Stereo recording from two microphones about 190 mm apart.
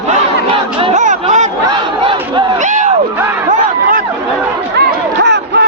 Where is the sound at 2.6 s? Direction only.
40° right (ahead or behind).